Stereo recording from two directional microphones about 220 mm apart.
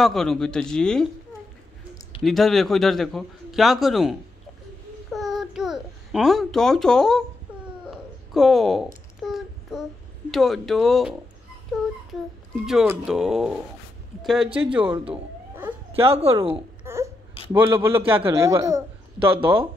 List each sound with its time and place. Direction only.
0.0 s a man's voice: centre (ahead or behind)
2.2 s a man's voice: centre (ahead or behind)
5.1 s babbling: centre (ahead or behind)
7.9 s a sound: centre (ahead or behind)
9.2 s child singing: centre (ahead or behind)
10.3 s a man's voice: centre (ahead or behind)
12.6 s a man's voice: 5° right (ahead or behind)
15.9 s speech: 25° right (ahead or behind)
16.8 s a sound: 10° right (ahead or behind)
17.5 s a man's voice: 10° right (ahead or behind)